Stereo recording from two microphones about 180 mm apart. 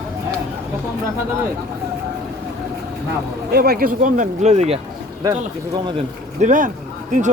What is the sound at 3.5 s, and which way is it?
Speech, 55° right (ahead or behind).